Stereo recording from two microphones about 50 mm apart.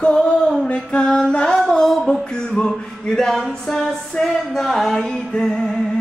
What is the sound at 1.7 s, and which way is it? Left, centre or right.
Music, centre.